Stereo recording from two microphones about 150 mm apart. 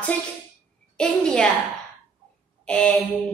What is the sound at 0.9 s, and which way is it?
Speech, 5° left (ahead or behind).